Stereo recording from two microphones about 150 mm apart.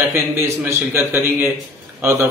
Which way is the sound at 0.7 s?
15° right (ahead or behind).